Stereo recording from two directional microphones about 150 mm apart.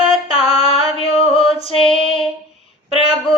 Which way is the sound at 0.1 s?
40° left (ahead or behind).